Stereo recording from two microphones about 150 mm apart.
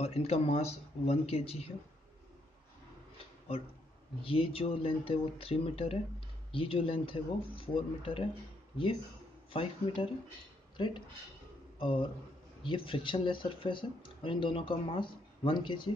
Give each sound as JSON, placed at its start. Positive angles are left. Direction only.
{"t": 0.0, "sound": "speech", "side_deg": 45}
{"t": 4.2, "sound": "speech", "side_deg": 40}
{"t": 9.5, "sound": "speech", "side_deg": 35}
{"t": 12.6, "sound": "speech", "side_deg": 35}